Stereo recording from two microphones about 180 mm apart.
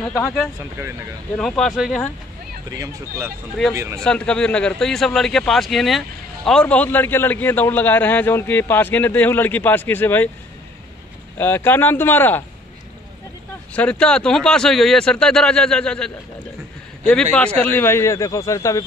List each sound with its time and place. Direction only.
1.6 s a man's voice: centre (ahead or behind)
2.8 s speech: 15° right (ahead or behind)
4.0 s a man's voice: 5° left (ahead or behind)
11.3 s a man's voice: 10° left (ahead or behind)
13.7 s a man's voice: 5° left (ahead or behind)